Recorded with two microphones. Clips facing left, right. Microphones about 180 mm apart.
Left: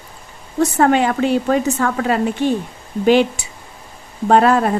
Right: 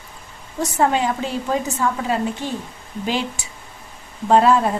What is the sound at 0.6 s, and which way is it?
A woman's voice, 65° left (ahead or behind).